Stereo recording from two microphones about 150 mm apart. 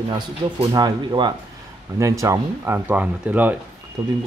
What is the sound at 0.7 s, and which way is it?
Speech, 30° right (ahead or behind).